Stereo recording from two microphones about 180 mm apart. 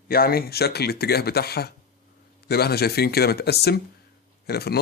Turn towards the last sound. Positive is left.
turn(degrees=60)  # may be behind; listen again after turning